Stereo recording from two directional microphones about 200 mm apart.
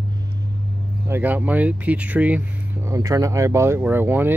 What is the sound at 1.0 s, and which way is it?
Speech, 10° right (ahead or behind).